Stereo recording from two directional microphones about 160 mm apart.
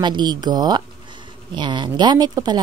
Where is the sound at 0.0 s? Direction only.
30° right (ahead or behind).